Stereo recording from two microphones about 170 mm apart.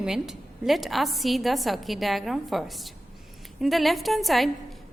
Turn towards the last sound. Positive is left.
turn(degrees=0)  # may be behind; listen again after turning